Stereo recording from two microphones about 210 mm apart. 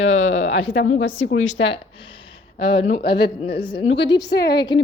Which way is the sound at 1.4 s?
30° left (ahead or behind).